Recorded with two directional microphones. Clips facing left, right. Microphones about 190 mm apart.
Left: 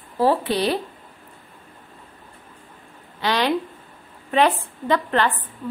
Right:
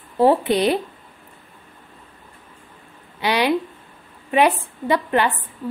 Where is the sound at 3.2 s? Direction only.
15° right (ahead or behind).